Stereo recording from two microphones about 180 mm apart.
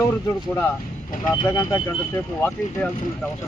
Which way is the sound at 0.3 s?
15° left (ahead or behind).